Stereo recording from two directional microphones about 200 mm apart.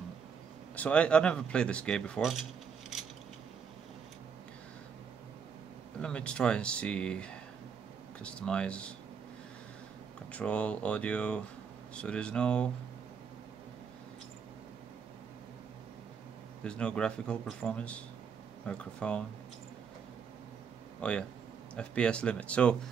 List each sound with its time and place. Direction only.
0.7 s speech: 5° left (ahead or behind)
5.9 s speech: 5° left (ahead or behind)
10.3 s speech: 5° left (ahead or behind)
16.6 s speech: 5° left (ahead or behind)
21.0 s speech: 5° left (ahead or behind)